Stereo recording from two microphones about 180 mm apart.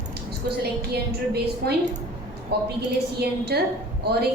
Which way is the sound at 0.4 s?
65° right (ahead or behind).